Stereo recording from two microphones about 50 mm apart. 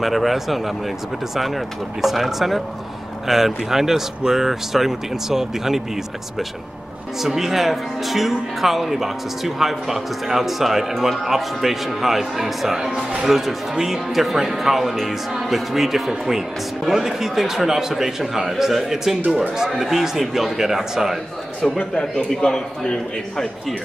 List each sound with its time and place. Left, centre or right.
0.0 s speech: centre
7.2 s speech: centre
21.6 s speech: left
22.0 s a man's voice: centre